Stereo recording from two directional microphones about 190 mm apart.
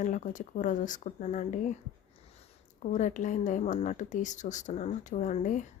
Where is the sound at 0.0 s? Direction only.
40° left (ahead or behind).